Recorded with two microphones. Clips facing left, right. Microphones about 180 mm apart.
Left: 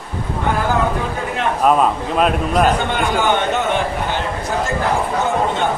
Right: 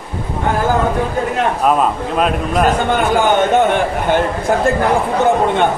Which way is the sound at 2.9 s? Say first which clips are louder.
Right 4 dB; 50° right (ahead or behind).